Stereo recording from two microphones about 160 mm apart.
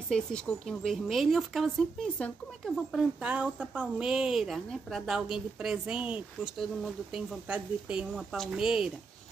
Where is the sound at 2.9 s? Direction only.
5° right (ahead or behind).